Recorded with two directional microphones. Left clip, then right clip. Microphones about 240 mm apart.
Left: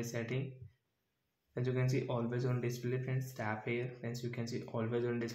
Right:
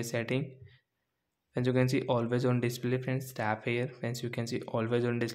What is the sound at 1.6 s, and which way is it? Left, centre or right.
Speech, right.